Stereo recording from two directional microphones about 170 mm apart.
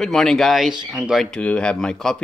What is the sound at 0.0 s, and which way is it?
Speech, centre (ahead or behind).